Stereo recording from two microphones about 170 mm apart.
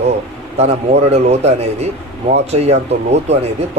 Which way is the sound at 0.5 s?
40° right (ahead or behind).